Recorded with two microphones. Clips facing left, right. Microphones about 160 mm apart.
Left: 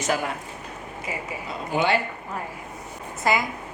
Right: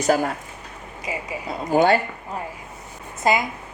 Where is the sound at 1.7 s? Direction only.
40° right (ahead or behind).